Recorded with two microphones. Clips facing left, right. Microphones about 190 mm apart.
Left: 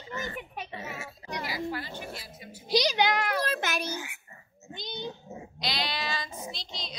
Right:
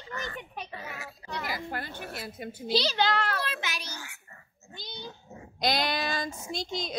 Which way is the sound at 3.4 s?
50° left (ahead or behind).